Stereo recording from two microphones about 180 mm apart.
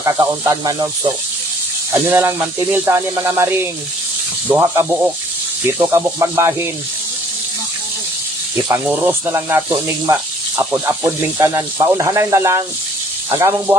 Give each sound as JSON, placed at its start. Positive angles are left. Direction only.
{"t": 0.0, "sound": "speech", "side_deg": -20}
{"t": 1.9, "sound": "speech", "side_deg": -10}
{"t": 8.7, "sound": "speech", "side_deg": -10}